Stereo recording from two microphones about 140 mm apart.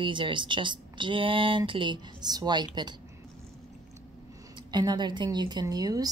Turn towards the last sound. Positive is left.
turn(degrees=-25)  # may be behind; listen again after turning